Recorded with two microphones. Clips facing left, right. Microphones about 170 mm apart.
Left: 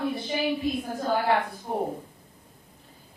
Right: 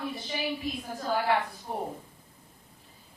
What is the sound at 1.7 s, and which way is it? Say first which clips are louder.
Speech: left 6 dB; 40° left (ahead or behind).